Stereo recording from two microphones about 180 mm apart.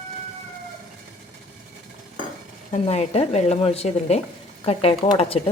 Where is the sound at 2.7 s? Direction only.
35° left (ahead or behind).